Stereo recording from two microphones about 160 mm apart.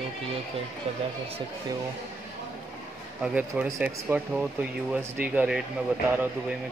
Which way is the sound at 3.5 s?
10° right (ahead or behind).